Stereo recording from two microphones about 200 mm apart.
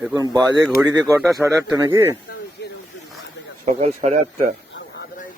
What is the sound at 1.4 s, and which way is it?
Speech, 15° right (ahead or behind).